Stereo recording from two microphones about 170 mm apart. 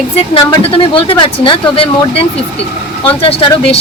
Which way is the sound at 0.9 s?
30° left (ahead or behind).